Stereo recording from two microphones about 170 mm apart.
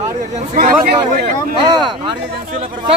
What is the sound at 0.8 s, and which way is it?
Speech, 60° right (ahead or behind).